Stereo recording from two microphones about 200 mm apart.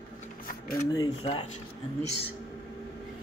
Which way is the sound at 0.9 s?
25° left (ahead or behind).